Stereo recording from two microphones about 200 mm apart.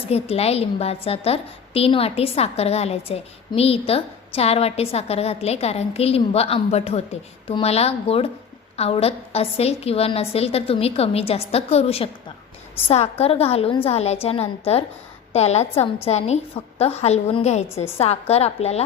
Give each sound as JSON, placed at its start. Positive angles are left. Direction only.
{"t": 0.1, "sound": "a woman's voice", "side_deg": 30}